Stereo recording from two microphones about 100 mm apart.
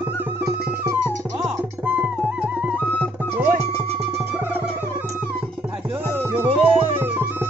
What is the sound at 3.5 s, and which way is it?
Music, 90° right.